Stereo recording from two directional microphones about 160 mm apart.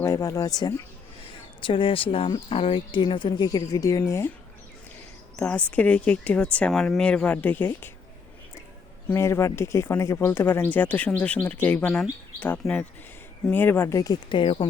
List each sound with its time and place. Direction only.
0.0 s speech: 20° left (ahead or behind)
5.4 s speech: 10° left (ahead or behind)
9.0 s speech: 15° left (ahead or behind)